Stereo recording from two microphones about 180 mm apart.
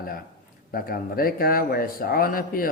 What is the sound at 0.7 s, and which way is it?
Speech, 55° left (ahead or behind).